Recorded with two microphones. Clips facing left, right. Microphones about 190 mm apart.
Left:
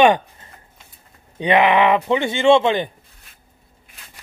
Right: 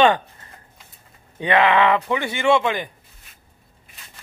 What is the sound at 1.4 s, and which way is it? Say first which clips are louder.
Speech: left 2 dB; 20° left (ahead or behind).